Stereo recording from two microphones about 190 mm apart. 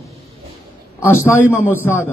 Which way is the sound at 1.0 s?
10° left (ahead or behind).